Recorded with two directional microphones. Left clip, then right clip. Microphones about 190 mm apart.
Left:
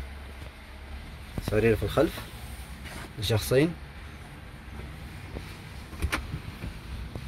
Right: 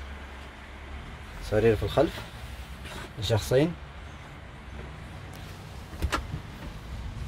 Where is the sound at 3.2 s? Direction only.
Centre (ahead or behind).